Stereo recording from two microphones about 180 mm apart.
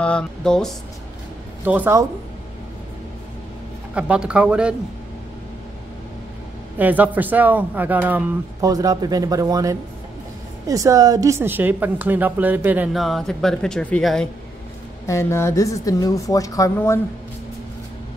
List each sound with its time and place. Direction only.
0.0 s a man's voice: 5° left (ahead or behind)
1.6 s a woman's voice: 10° right (ahead or behind)
3.9 s a man's voice: 5° right (ahead or behind)
6.8 s a woman's voice: 10° right (ahead or behind)
15.0 s speech: 15° left (ahead or behind)